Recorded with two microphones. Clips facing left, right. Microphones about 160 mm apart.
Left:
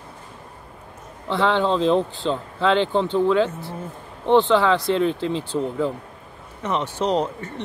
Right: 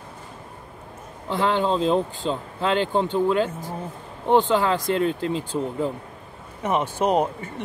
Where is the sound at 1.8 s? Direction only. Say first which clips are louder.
Left 2 dB; 5° right (ahead or behind).